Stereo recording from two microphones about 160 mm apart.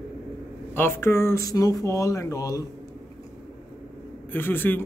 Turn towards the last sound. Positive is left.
turn(degrees=15)  # may be behind; listen again after turning